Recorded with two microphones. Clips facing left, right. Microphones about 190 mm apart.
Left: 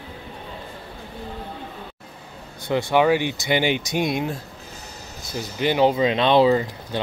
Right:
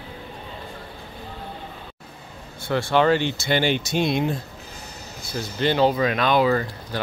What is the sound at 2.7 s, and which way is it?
Speech, 15° left (ahead or behind).